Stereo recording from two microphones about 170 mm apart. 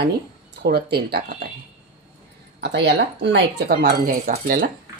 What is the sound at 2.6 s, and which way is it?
Speech, 90° right.